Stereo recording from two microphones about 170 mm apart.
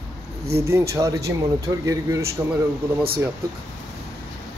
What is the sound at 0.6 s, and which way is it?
Speech, 15° right (ahead or behind).